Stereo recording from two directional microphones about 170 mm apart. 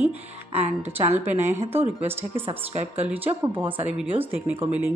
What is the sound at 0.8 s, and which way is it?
A woman's voice, 10° right (ahead or behind).